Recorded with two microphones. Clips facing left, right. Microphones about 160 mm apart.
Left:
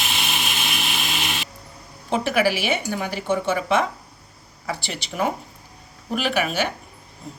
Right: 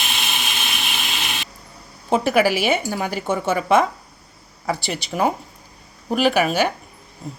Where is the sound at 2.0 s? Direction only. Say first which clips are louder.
Right 3 dB; 40° right (ahead or behind).